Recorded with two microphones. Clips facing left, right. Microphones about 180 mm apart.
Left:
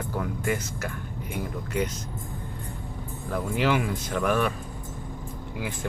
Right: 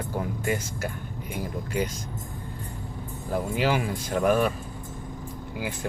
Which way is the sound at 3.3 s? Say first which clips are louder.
Even; 30° right (ahead or behind).